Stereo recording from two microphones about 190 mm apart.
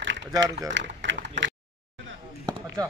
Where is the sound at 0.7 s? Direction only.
75° right (ahead or behind).